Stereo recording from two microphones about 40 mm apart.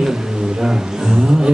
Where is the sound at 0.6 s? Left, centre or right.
Centre.